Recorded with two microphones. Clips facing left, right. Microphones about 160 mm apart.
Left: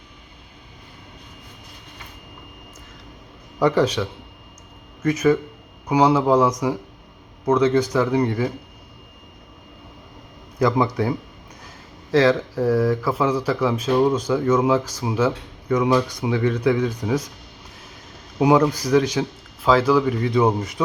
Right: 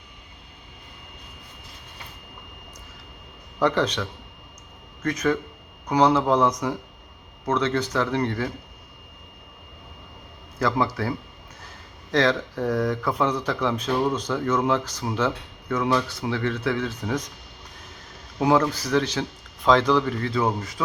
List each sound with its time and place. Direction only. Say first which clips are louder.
3.6 s speech: left 4 dB; 10° left (ahead or behind)
5.0 s speech: left 6 dB; 10° left (ahead or behind)
10.6 s speech: left 4 dB; 15° left (ahead or behind)
12.1 s speech: left 5 dB; 5° left (ahead or behind)
18.3 s speech: left 4 dB; 15° left (ahead or behind)